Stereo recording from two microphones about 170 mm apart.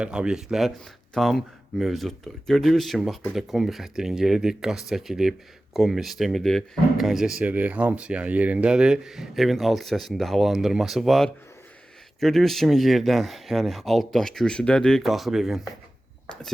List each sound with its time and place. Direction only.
0.0 s speech: 5° right (ahead or behind)